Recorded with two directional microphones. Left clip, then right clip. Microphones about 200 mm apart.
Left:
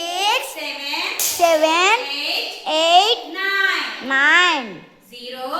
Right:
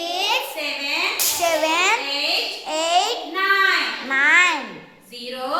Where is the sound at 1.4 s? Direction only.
45° left (ahead or behind).